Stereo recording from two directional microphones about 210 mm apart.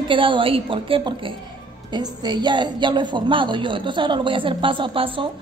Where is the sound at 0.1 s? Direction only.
25° right (ahead or behind).